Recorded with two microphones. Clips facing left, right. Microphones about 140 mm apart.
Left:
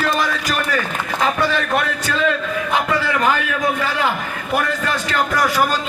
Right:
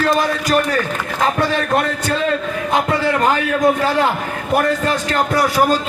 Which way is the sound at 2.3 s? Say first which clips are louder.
Right 1 dB; 40° right (ahead or behind).